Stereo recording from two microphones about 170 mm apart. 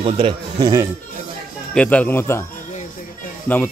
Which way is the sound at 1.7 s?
5° left (ahead or behind).